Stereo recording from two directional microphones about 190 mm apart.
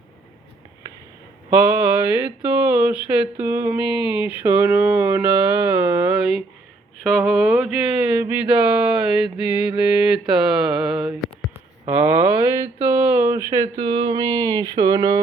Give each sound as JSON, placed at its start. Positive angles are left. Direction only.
{"t": 2.0, "sound": "mantra", "side_deg": -10}
{"t": 3.9, "sound": "speech", "side_deg": 25}
{"t": 4.2, "sound": "mantra", "side_deg": -10}
{"t": 7.2, "sound": "a sound", "side_deg": -5}
{"t": 11.5, "sound": "a sound", "side_deg": -10}
{"t": 13.1, "sound": "speech", "side_deg": -15}